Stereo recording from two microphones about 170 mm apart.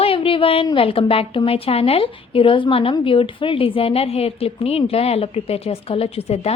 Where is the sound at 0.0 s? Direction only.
30° left (ahead or behind).